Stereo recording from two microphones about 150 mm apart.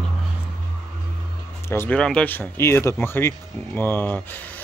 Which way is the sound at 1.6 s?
15° left (ahead or behind).